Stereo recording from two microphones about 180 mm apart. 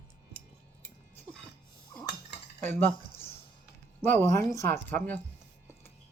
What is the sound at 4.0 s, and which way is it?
Speech, 15° left (ahead or behind).